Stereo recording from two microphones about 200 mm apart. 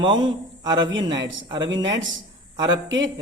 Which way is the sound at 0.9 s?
70° right (ahead or behind).